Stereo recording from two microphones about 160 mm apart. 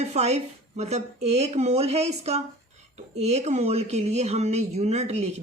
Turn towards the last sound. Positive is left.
turn(degrees=-45)  # may be behind; listen again after turning